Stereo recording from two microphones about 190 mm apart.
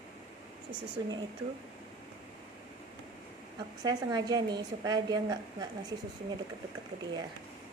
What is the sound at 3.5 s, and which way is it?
A woman's voice, 20° right (ahead or behind).